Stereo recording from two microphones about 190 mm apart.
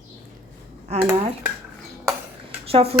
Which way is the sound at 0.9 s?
35° right (ahead or behind).